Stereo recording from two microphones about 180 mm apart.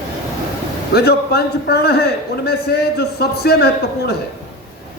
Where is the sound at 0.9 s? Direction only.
65° left (ahead or behind).